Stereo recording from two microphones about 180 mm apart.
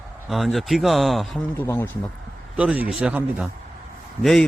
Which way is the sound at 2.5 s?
5° right (ahead or behind).